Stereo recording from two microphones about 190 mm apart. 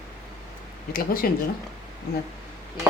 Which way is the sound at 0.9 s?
50° left (ahead or behind).